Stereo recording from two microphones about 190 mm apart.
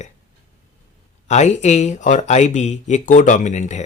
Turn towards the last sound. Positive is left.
turn(degrees=40)  # may be behind; listen again after turning